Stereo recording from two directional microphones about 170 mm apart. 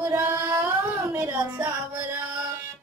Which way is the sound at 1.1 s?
15° right (ahead or behind).